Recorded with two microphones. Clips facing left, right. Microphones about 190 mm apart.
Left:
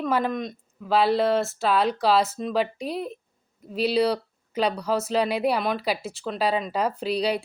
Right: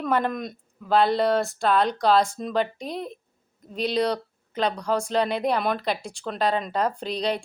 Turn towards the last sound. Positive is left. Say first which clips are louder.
# left 2 dB
turn(degrees=10)  # may be behind; listen again after turning